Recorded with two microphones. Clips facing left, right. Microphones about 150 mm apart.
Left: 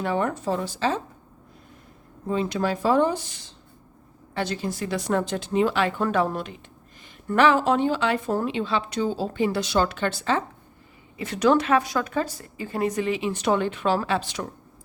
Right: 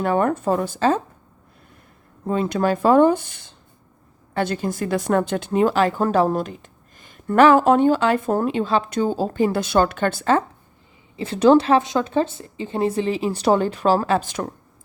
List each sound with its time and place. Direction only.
0.0 s speech: 50° right (ahead or behind)
2.2 s speech: 50° right (ahead or behind)
11.2 s speech: 30° right (ahead or behind); by 14.5 s 50° right (ahead or behind)